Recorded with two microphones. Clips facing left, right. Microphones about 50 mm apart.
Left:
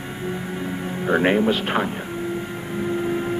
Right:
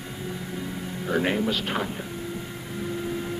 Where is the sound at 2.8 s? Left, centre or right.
Left.